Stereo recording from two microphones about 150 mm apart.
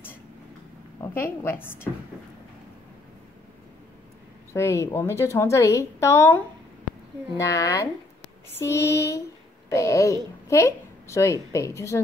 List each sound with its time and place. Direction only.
1.0 s a woman's voice: 15° left (ahead or behind)
4.6 s a woman's voice: 20° left (ahead or behind)